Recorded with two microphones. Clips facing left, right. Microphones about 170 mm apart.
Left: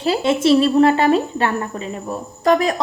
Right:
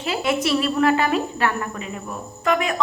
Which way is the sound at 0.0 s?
30° left (ahead or behind).